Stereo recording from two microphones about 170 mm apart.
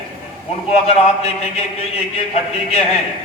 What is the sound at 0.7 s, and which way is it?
Speech, 35° left (ahead or behind).